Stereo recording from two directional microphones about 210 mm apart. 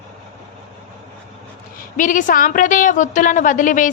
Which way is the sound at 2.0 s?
40° left (ahead or behind).